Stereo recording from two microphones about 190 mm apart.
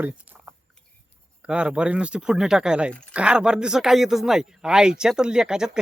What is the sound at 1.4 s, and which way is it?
Speech, 5° right (ahead or behind).